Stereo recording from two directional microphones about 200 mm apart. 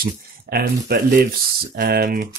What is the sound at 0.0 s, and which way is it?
Speech, 50° right (ahead or behind).